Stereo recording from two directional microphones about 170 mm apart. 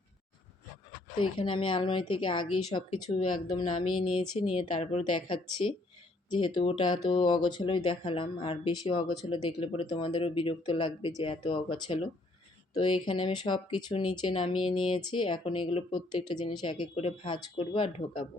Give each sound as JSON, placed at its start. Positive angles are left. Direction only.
{"t": 1.4, "sound": "speech", "side_deg": 30}